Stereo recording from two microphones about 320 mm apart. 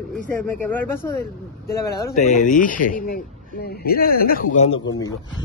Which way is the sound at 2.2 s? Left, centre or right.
Left.